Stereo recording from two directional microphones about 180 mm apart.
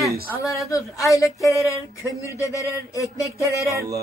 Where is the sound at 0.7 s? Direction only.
20° left (ahead or behind).